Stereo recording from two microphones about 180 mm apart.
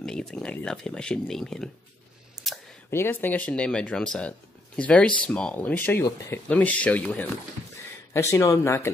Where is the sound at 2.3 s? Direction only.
Centre (ahead or behind).